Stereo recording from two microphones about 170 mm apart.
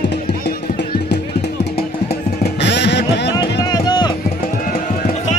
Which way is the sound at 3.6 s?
25° left (ahead or behind).